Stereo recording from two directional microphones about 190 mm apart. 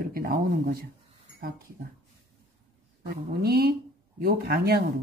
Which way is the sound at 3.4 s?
55° right (ahead or behind).